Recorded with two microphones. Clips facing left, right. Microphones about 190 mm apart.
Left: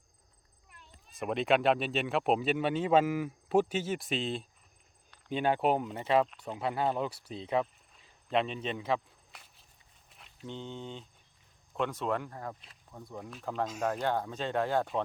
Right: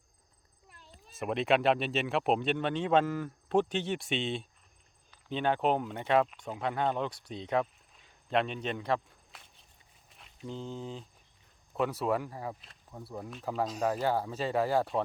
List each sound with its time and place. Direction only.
0.7 s cat: 35° right (ahead or behind)
1.1 s speech: centre (ahead or behind)
10.1 s a sound: centre (ahead or behind)
11.7 s speech: 10° right (ahead or behind)